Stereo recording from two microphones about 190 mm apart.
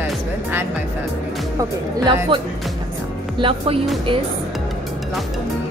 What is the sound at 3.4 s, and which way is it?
Speech, 30° right (ahead or behind).